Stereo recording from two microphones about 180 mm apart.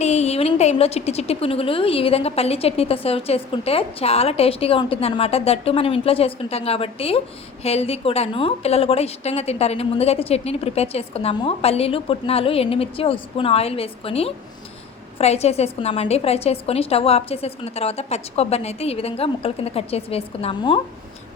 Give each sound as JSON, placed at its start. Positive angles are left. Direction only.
{"t": 0.0, "sound": "a woman's voice", "side_deg": 35}